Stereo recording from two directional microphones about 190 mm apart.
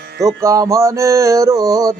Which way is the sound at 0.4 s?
15° right (ahead or behind).